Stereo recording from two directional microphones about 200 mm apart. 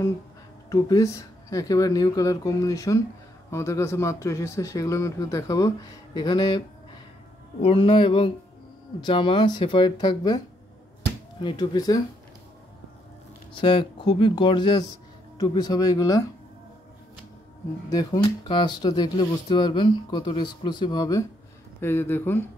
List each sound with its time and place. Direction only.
0.7 s speech: 15° left (ahead or behind)
7.6 s speech: 25° left (ahead or behind)
11.4 s speech: 20° left (ahead or behind)
13.6 s speech: 25° left (ahead or behind)
17.8 s speech: 20° left (ahead or behind)